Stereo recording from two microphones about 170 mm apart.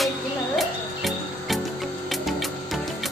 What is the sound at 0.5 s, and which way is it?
Music, centre (ahead or behind).